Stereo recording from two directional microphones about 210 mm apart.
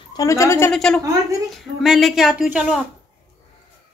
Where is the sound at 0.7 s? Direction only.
Centre (ahead or behind).